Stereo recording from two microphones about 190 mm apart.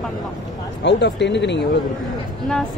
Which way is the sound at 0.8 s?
65° left (ahead or behind).